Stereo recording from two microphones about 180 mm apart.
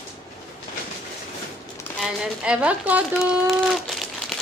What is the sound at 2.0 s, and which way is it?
A woman's voice, 5° right (ahead or behind).